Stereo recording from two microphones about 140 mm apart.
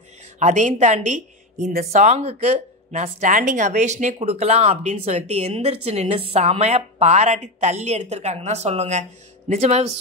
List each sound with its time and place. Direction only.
0.4 s a woman's voice: 60° right (ahead or behind)
1.9 s speech: 55° right (ahead or behind)